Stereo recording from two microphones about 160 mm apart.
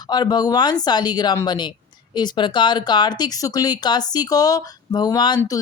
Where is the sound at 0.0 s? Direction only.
25° left (ahead or behind).